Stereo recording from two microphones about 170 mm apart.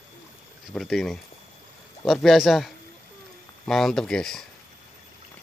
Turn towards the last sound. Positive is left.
turn(degrees=5)  # may be behind; listen again after turning